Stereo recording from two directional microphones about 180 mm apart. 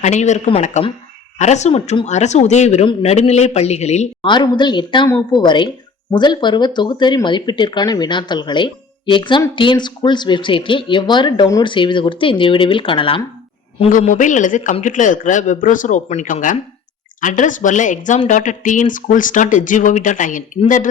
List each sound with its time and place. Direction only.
0.0 s speech: 40° left (ahead or behind)
4.3 s speech: 25° left (ahead or behind)
14.0 s speech: 45° left (ahead or behind)